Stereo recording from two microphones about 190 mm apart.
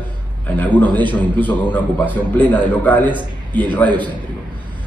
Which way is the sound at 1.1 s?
10° left (ahead or behind).